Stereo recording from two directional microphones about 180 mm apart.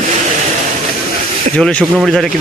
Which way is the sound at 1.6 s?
5° left (ahead or behind).